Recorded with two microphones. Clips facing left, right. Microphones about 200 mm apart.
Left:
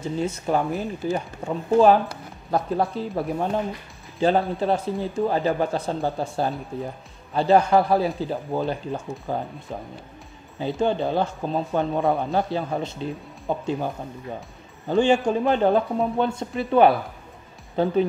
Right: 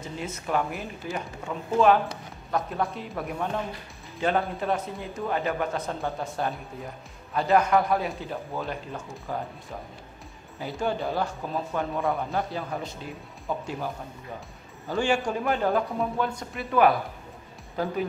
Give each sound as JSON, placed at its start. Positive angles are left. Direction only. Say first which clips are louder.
{"t": 0.2, "sound": "speech", "louder": "left 4 dB", "side_deg": 30}
{"t": 10.6, "sound": "speech", "louder": "left 6 dB", "side_deg": 25}
{"t": 14.9, "sound": "speech", "louder": "left 6 dB", "side_deg": 20}